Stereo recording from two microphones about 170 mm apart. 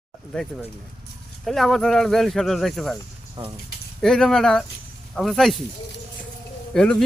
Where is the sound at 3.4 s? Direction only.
25° right (ahead or behind).